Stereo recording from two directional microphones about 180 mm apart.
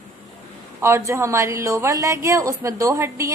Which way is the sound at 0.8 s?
15° right (ahead or behind).